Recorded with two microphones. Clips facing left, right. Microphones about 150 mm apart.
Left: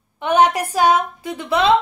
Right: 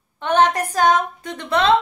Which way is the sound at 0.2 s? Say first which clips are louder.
Left 1 dB; 10° left (ahead or behind).